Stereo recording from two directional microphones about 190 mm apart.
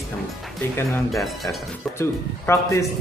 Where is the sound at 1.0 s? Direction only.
Centre (ahead or behind).